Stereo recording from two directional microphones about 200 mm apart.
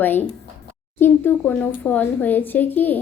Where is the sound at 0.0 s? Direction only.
10° left (ahead or behind).